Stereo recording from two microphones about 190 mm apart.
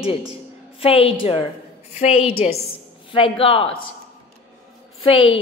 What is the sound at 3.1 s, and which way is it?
Speech, 30° left (ahead or behind).